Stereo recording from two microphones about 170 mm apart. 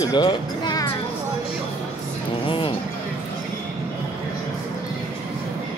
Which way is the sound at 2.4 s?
30° left (ahead or behind).